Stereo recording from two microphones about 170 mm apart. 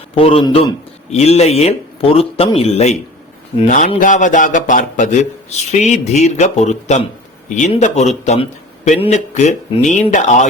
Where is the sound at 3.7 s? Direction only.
50° left (ahead or behind).